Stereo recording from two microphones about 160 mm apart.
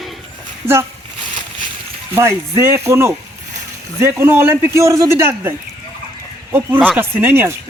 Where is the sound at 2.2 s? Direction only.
15° right (ahead or behind).